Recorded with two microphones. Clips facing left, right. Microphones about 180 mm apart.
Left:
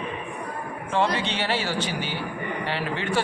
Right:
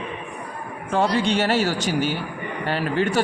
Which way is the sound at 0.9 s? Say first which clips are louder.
Right 4 dB; 40° right (ahead or behind).